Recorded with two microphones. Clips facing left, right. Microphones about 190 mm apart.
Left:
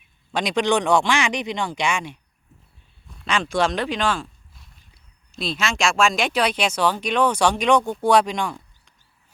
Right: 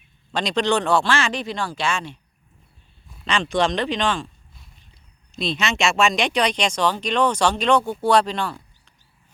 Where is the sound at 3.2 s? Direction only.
5° left (ahead or behind).